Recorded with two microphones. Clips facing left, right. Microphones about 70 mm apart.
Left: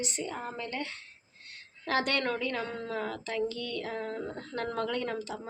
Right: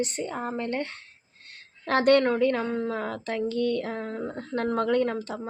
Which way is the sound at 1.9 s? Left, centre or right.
Right.